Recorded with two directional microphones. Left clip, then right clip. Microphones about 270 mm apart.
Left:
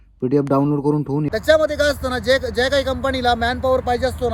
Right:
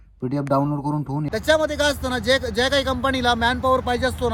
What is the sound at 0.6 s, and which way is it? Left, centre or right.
Speech, right.